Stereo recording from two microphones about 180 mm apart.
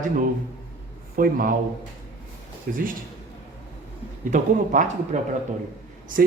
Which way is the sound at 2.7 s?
55° right (ahead or behind).